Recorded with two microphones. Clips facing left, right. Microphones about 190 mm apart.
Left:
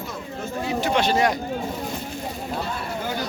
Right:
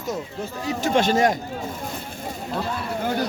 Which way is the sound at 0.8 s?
45° right (ahead or behind).